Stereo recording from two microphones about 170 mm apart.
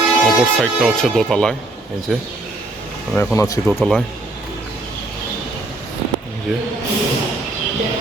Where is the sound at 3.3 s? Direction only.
20° left (ahead or behind).